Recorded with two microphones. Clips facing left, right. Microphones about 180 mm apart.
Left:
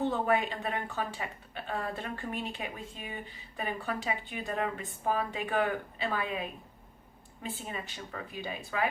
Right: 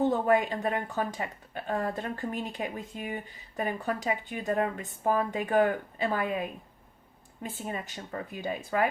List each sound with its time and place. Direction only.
0.0 s a woman's voice: 40° right (ahead or behind)
7.4 s speech: 45° right (ahead or behind)